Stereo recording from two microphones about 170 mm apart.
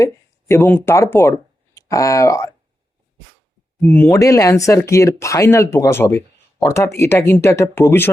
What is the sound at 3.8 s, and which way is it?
Speech, 10° left (ahead or behind).